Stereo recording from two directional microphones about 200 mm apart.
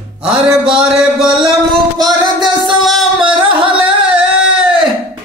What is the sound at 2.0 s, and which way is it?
Music, 20° right (ahead or behind).